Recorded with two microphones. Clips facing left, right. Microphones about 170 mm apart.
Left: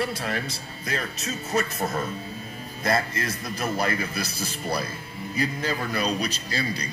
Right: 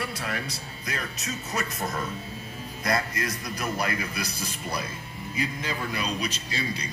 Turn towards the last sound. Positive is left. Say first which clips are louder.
# left 3 dB
turn(degrees=35)  # may be behind; listen again after turning